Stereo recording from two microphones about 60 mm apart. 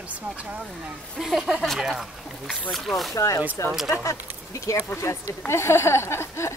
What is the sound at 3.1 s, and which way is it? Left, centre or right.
Speech, left.